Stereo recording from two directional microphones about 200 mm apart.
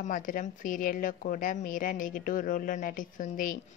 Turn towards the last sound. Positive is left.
turn(degrees=45)  # may be behind; listen again after turning